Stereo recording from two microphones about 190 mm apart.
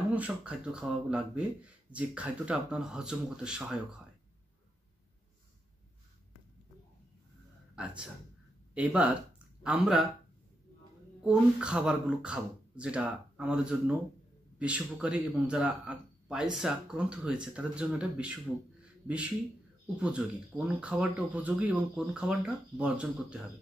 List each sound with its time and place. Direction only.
0.1 s speech: 5° right (ahead or behind)
7.7 s a man's voice: 5° right (ahead or behind)
11.2 s speech: 5° right (ahead or behind)